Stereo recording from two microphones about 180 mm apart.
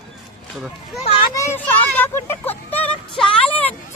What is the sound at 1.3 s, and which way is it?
Speech, 15° left (ahead or behind).